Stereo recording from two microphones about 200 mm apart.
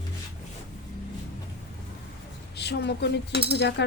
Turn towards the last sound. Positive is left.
turn(degrees=60)  # may be behind; listen again after turning